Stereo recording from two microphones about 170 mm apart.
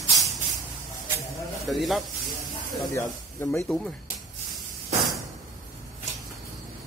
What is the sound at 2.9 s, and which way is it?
Speech, 15° left (ahead or behind).